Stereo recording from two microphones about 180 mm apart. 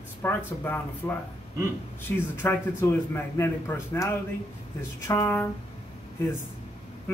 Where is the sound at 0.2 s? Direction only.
15° left (ahead or behind).